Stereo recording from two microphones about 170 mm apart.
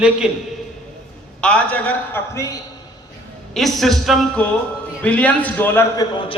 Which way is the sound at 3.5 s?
Centre (ahead or behind).